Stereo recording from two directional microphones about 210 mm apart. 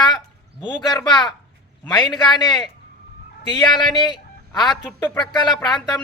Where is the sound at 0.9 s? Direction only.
20° left (ahead or behind).